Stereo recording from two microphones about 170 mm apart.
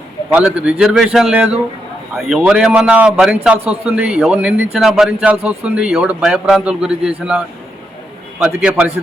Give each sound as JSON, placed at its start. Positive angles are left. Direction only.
{"t": 0.3, "sound": "a man's voice", "side_deg": -5}